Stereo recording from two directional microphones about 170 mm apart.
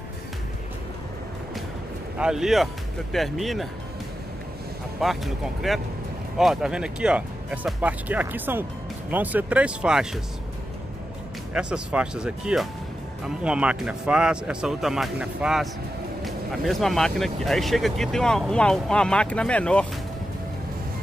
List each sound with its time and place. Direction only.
2.1 s speech: 5° right (ahead or behind)
5.0 s speech: centre (ahead or behind)
11.5 s speech: 5° right (ahead or behind)